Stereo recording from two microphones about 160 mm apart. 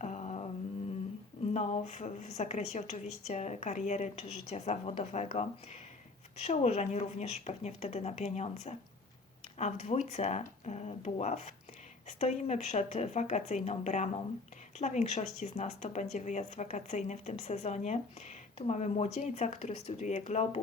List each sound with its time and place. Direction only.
0.0 s carnatic music: 45° left (ahead or behind)
1.5 s speech: 45° left (ahead or behind)